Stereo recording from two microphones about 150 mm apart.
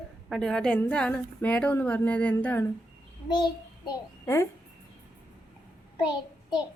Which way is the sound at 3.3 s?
30° left (ahead or behind).